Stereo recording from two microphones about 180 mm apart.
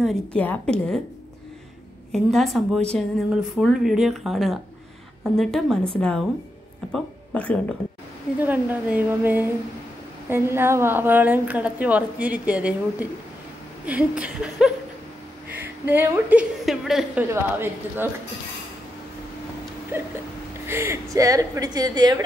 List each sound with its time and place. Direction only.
0.0 s a woman's voice: 5° left (ahead or behind)
2.1 s a woman's voice: centre (ahead or behind)
8.4 s a woman's voice: 10° right (ahead or behind)
15.8 s a woman's voice: 10° right (ahead or behind)
17.3 s a woman's voice: 15° right (ahead or behind)
19.9 s a woman's voice: 15° right (ahead or behind)